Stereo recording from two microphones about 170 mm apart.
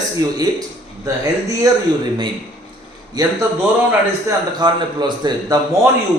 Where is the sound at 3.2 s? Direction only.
25° right (ahead or behind).